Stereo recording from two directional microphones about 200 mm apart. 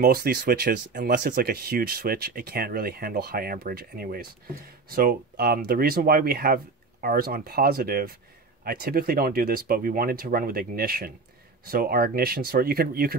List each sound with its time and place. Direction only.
0.0 s speech: 50° right (ahead or behind)